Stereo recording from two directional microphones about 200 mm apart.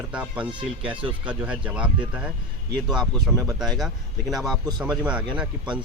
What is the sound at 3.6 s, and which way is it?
Speech, centre (ahead or behind).